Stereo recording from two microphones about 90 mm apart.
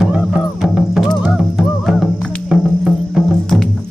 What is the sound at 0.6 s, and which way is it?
Music, 5° right (ahead or behind).